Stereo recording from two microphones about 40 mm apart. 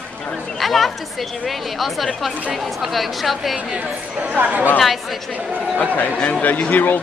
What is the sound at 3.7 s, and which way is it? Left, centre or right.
Speech, right.